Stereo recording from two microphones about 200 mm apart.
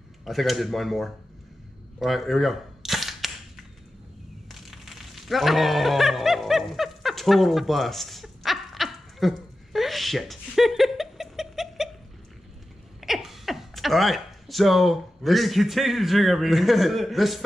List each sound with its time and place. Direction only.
0.2 s speech: centre (ahead or behind)
2.0 s cap gun: centre (ahead or behind)
4.5 s a sound: centre (ahead or behind)
13.0 s speech: centre (ahead or behind)